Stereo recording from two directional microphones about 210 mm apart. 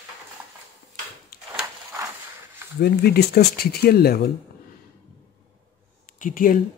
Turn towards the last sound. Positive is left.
turn(degrees=40)  # may be behind; listen again after turning